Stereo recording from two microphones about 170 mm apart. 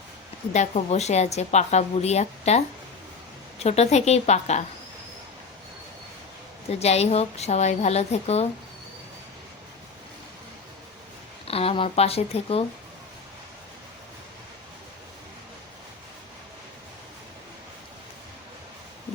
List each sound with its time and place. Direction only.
0.5 s a woman's voice: 40° left (ahead or behind)
6.7 s a woman's voice: 40° left (ahead or behind)
11.4 s a woman's voice: 35° left (ahead or behind)